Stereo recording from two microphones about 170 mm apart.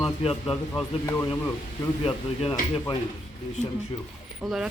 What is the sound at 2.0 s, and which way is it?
Speech, 35° left (ahead or behind).